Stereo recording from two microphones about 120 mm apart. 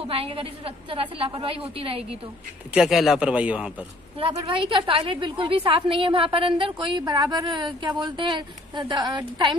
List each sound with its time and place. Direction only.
0.0 s a woman's voice: 50° right (ahead or behind)
2.7 s speech: 5° right (ahead or behind)
4.5 s a woman's voice: 45° right (ahead or behind)